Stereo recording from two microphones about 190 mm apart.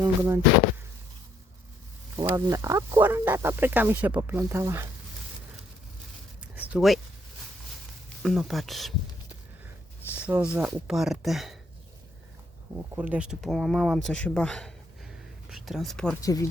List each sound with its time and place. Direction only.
0.0 s speech: 15° right (ahead or behind)
2.1 s speech: 15° right (ahead or behind)
6.4 s a sound: 5° right (ahead or behind)
8.2 s speech: centre (ahead or behind)
10.5 s speech: 5° right (ahead or behind)
12.7 s speech: 10° right (ahead or behind)
16.2 s speech: 20° left (ahead or behind)